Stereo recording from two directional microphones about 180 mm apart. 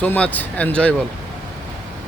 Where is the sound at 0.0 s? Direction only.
10° left (ahead or behind).